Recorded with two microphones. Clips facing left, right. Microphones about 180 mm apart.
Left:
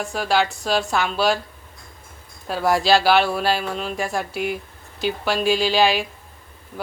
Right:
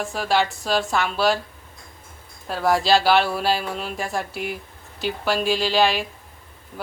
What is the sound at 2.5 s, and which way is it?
A woman's voice, centre (ahead or behind).